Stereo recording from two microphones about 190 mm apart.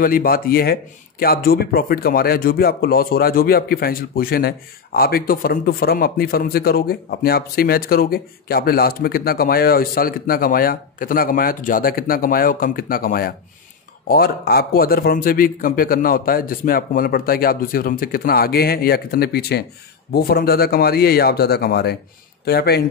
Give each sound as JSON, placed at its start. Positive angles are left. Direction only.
{"t": 0.0, "sound": "a man's voice", "side_deg": 50}